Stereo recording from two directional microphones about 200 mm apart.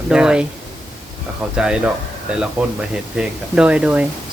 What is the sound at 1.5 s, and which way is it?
Speech, 5° right (ahead or behind).